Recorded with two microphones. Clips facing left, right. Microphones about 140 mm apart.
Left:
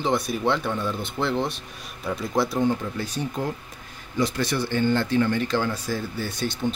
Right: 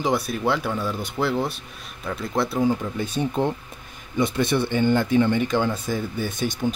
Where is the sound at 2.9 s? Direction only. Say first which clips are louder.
Right 4 dB; 25° right (ahead or behind).